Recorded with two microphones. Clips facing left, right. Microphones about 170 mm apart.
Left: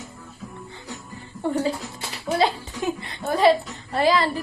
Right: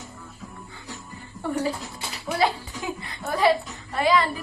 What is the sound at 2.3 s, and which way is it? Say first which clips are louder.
A woman's voice: left 2 dB; 25° left (ahead or behind).